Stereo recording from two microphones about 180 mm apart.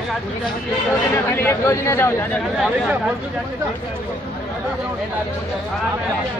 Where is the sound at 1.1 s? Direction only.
15° left (ahead or behind).